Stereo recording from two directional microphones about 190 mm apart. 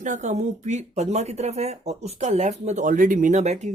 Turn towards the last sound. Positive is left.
turn(degrees=-40)  # may be behind; listen again after turning